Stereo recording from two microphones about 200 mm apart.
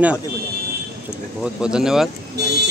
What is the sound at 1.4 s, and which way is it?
Speech, 5° right (ahead or behind).